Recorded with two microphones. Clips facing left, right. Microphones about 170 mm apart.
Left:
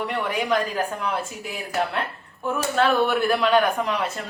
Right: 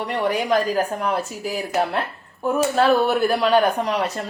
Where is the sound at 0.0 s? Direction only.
40° right (ahead or behind).